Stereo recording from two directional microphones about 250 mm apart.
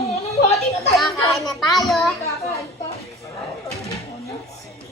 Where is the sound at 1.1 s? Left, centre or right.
Centre.